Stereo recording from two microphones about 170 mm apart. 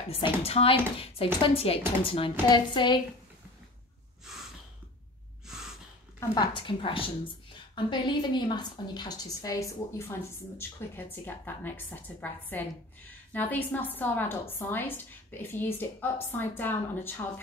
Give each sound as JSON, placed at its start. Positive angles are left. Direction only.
{"t": 0.1, "sound": "a woman's voice", "side_deg": 35}
{"t": 6.1, "sound": "a woman's voice", "side_deg": 25}